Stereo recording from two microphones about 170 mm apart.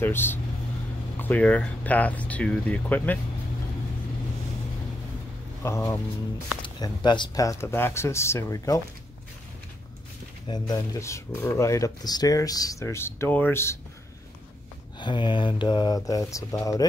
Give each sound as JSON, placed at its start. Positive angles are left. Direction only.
{"t": 0.0, "sound": "speech", "side_deg": 15}
{"t": 5.6, "sound": "speech", "side_deg": 15}
{"t": 10.5, "sound": "speech", "side_deg": 20}
{"t": 15.0, "sound": "speech", "side_deg": 25}